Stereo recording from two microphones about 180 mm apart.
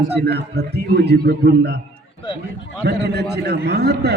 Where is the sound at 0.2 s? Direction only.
65° right (ahead or behind).